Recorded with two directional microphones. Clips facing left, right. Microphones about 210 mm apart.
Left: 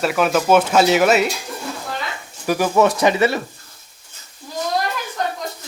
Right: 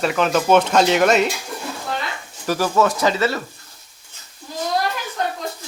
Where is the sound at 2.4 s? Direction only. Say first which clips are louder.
Left 2 dB; 15° left (ahead or behind).